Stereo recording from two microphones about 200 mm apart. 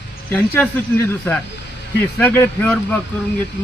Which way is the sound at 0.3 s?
5° left (ahead or behind).